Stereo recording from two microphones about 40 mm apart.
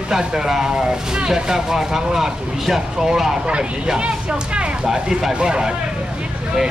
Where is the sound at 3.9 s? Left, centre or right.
Right.